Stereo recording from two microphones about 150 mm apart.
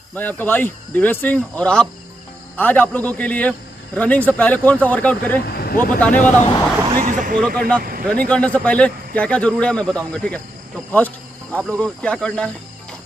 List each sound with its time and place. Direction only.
0.1 s a man's voice: 10° left (ahead or behind)
5.4 s vehicle: 90° left
6.1 s speech: 55° left (ahead or behind)
7.0 s speech: 60° right (ahead or behind)
7.3 s a man's voice: 5° left (ahead or behind)